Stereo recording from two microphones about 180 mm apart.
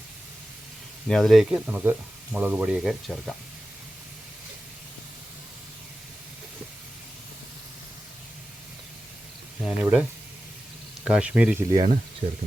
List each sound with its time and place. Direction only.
1.0 s speech: centre (ahead or behind)
9.6 s speech: 5° right (ahead or behind)
11.0 s speech: 5° right (ahead or behind)
11.7 s speech: 25° right (ahead or behind)